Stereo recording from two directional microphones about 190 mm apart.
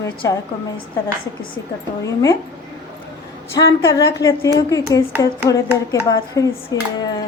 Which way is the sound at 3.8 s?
20° left (ahead or behind).